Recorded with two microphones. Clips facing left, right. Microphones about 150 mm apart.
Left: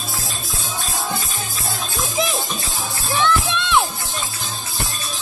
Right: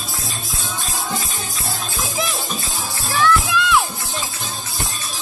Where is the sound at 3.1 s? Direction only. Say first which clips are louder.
Right 2 dB; 25° left (ahead or behind).